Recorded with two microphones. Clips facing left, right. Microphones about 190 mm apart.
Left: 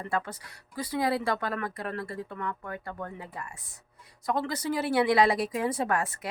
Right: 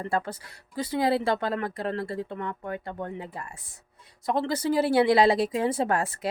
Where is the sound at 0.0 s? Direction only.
30° right (ahead or behind).